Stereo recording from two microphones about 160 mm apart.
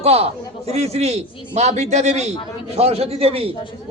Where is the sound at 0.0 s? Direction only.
40° right (ahead or behind).